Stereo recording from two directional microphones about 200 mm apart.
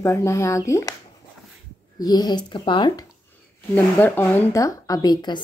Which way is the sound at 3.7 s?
10° left (ahead or behind).